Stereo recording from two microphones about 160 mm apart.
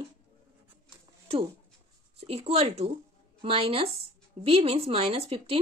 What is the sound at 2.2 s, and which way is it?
A woman's voice, 40° right (ahead or behind).